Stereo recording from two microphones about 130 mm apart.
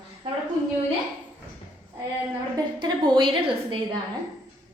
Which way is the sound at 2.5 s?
35° right (ahead or behind).